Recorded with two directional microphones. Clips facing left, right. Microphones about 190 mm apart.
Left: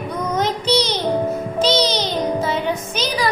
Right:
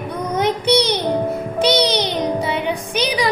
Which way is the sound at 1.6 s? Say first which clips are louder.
Right 2 dB; 60° right (ahead or behind).